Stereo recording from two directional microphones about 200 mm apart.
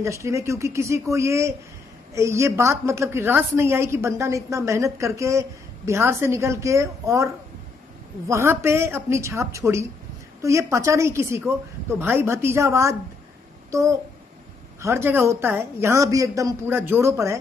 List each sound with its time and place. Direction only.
0.0 s a woman's voice: 15° right (ahead or behind)
8.3 s a woman's voice: 15° right (ahead or behind)